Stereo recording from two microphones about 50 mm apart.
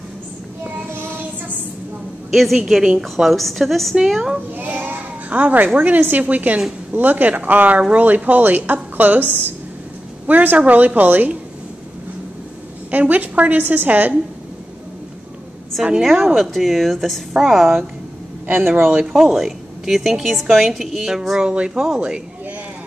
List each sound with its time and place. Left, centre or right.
0.9 s child singing: right
2.3 s a woman's voice: centre
4.6 s a child's voice: right
12.9 s speech: right
16.0 s a woman's voice: centre
18.5 s speech: right
18.9 s a woman's voice: centre
21.4 s speech: centre